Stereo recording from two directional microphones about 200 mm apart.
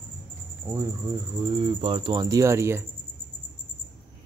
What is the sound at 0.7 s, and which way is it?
Speech, 15° right (ahead or behind).